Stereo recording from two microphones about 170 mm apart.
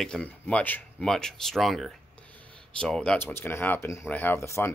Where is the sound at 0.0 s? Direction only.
5° left (ahead or behind).